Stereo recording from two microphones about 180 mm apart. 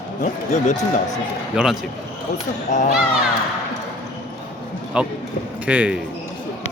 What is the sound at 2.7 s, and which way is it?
Speech, 45° left (ahead or behind).